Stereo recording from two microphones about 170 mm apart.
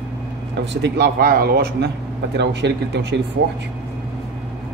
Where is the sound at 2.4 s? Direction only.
85° right.